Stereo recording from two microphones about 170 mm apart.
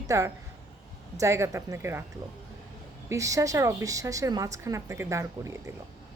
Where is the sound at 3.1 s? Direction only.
20° right (ahead or behind).